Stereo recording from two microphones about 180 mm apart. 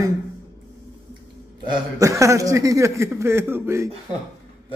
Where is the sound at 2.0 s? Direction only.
15° right (ahead or behind).